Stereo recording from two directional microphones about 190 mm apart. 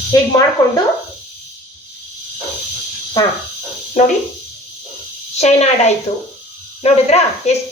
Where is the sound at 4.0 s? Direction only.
40° left (ahead or behind).